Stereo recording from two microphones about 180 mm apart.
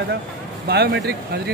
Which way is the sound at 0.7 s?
65° right (ahead or behind).